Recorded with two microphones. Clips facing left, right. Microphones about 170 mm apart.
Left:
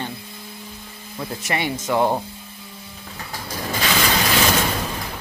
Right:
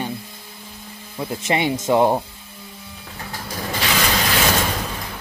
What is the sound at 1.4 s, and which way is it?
Speech, 25° right (ahead or behind).